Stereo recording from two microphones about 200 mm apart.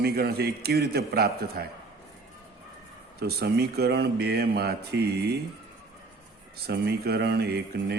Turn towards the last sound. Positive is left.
turn(degrees=-55)  # may be behind; listen again after turning